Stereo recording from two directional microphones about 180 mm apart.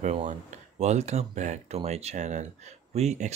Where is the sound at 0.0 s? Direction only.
40° right (ahead or behind).